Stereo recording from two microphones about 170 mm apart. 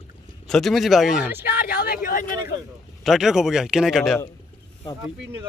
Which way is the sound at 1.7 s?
60° left (ahead or behind).